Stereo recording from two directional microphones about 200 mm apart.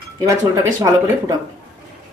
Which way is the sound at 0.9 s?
15° right (ahead or behind).